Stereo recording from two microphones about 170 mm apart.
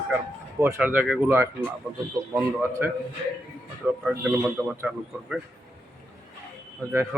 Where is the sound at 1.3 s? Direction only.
15° right (ahead or behind).